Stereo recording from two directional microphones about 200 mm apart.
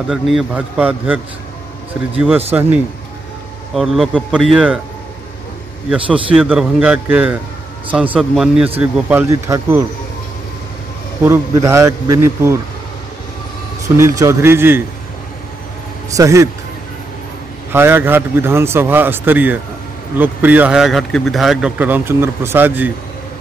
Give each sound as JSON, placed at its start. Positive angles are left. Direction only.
{"t": 0.1, "sound": "a man's voice", "side_deg": 0}
{"t": 3.7, "sound": "a man's voice", "side_deg": 0}
{"t": 5.9, "sound": "a man's voice", "side_deg": -5}
{"t": 9.1, "sound": "a man's voice", "side_deg": -15}
{"t": 11.2, "sound": "a man's voice", "side_deg": -15}
{"t": 13.8, "sound": "a man's voice", "side_deg": -15}
{"t": 16.2, "sound": "a man's voice", "side_deg": -15}
{"t": 17.7, "sound": "a man's voice", "side_deg": -10}